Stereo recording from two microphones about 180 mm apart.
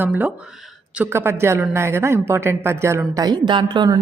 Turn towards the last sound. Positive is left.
turn(degrees=-25)  # may be behind; listen again after turning